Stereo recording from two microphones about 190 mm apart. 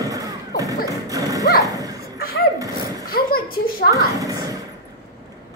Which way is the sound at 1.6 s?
20° right (ahead or behind).